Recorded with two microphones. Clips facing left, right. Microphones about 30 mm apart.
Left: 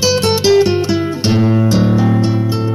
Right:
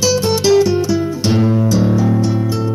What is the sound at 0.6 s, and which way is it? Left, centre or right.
Music, left.